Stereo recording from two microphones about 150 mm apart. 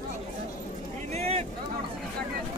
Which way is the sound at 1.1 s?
45° right (ahead or behind).